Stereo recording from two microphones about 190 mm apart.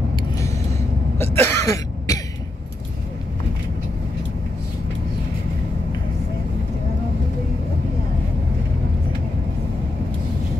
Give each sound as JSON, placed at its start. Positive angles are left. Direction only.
{"t": 0.4, "sound": "cough", "side_deg": 15}